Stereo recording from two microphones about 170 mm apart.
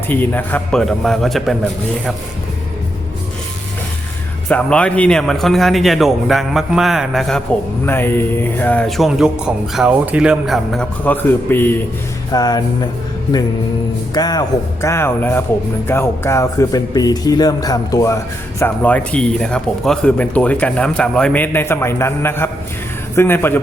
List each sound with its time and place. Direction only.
0.1 s a man's voice: 10° left (ahead or behind)
4.4 s a man's voice: 5° left (ahead or behind)
7.9 s a man's voice: 10° left (ahead or behind)
12.3 s speech: 20° left (ahead or behind)
14.1 s a man's voice: 25° left (ahead or behind)